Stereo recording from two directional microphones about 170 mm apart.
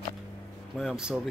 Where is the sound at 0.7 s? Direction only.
5° right (ahead or behind).